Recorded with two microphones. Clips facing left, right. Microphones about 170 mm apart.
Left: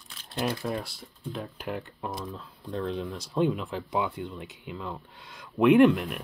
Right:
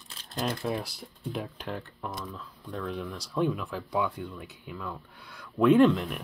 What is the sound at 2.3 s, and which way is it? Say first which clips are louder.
Speech: left 4 dB; 25° left (ahead or behind).